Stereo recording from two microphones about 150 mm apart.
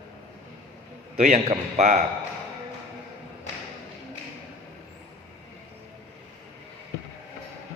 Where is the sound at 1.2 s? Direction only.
50° right (ahead or behind).